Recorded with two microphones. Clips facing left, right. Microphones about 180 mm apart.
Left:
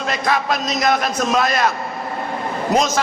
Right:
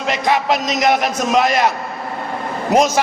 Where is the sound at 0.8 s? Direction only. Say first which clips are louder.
Even; 15° right (ahead or behind).